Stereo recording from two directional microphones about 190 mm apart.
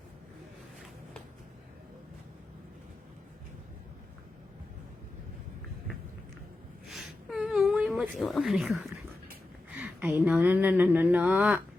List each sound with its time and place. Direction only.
6.8 s whimper: centre (ahead or behind)
8.2 s speech: centre (ahead or behind)